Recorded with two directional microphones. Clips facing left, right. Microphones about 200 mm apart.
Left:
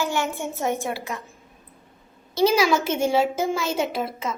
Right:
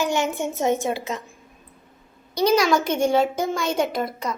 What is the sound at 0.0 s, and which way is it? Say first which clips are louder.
A woman's voice: right 3 dB; 20° right (ahead or behind).